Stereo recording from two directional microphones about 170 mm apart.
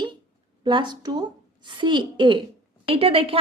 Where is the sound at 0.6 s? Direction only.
25° right (ahead or behind).